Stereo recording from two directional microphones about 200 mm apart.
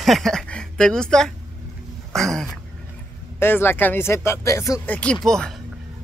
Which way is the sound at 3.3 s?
10° left (ahead or behind).